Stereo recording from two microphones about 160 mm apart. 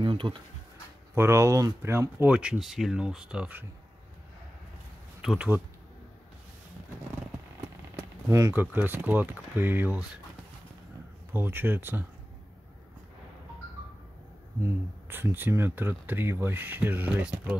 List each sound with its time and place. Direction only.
0.0 s a sound: 30° right (ahead or behind)
1.1 s speech: 15° right (ahead or behind)
5.2 s speech: 5° right (ahead or behind)
7.9 s speech: 20° right (ahead or behind)
11.3 s speech: 15° right (ahead or behind)
14.6 s speech: 15° right (ahead or behind)